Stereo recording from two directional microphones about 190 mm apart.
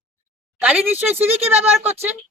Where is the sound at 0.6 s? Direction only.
10° right (ahead or behind).